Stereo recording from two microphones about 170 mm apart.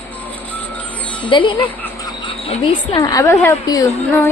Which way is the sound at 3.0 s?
20° left (ahead or behind).